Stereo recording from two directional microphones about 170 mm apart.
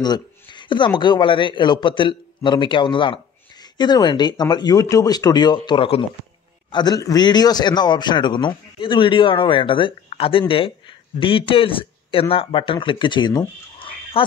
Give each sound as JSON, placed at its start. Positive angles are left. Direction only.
{"t": 0.0, "sound": "a man's voice", "side_deg": 25}